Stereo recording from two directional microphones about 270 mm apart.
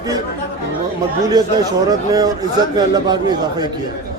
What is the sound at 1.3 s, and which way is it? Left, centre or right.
A man's voice, centre.